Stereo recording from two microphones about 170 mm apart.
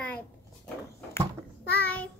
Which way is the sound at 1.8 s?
10° left (ahead or behind).